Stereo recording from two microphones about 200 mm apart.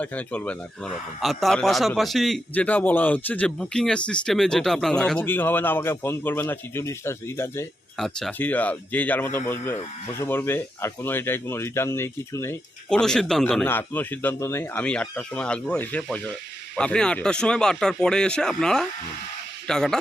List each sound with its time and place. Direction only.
0.0 s a man's voice: 5° left (ahead or behind)
7.9 s a man's voice: centre (ahead or behind)